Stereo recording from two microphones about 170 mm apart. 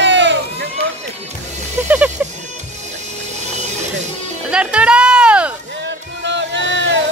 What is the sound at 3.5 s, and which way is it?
Music, 40° right (ahead or behind).